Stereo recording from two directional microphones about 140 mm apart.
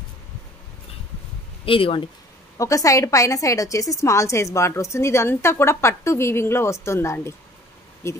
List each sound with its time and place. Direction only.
1.7 s speech: 40° left (ahead or behind)
2.5 s a woman's voice: 25° left (ahead or behind)